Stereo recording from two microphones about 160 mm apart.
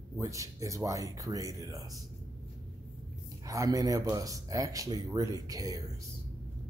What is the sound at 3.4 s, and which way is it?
Speech, 20° right (ahead or behind).